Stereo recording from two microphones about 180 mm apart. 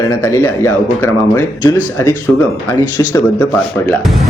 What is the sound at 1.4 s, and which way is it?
Speech, 15° left (ahead or behind).